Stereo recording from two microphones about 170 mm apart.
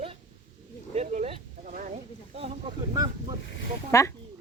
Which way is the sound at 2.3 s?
30° right (ahead or behind).